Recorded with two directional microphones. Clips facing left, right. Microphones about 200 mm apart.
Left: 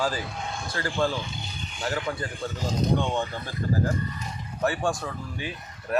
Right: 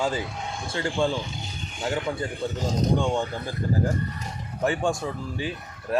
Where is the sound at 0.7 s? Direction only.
25° right (ahead or behind).